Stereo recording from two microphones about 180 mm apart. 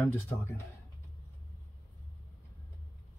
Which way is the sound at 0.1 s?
15° left (ahead or behind).